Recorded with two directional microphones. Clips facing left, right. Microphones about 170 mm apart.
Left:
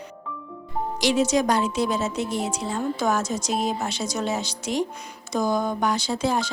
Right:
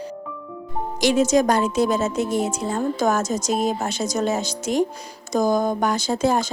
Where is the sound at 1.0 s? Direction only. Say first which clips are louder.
Right 4 dB; 45° right (ahead or behind).